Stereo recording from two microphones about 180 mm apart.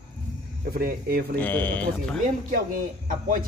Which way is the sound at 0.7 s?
55° right (ahead or behind).